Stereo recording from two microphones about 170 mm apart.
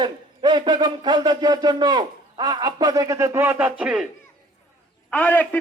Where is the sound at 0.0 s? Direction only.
25° right (ahead or behind); by 4.1 s 5° right (ahead or behind).